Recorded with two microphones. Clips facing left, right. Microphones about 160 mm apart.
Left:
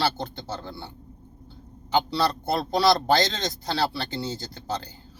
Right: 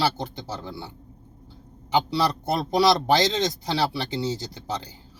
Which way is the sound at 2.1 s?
15° right (ahead or behind).